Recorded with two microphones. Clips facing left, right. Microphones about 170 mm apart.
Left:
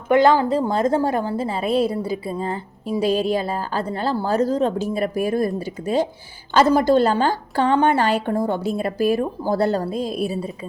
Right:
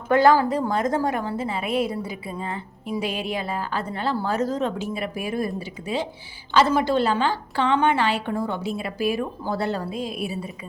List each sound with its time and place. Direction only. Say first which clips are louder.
0.1 s a woman's voice: left 2 dB; 20° left (ahead or behind); by 10.3 s 40° left (ahead or behind)